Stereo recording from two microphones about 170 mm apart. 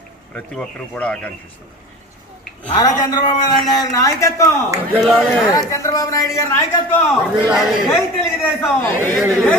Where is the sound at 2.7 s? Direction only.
25° left (ahead or behind).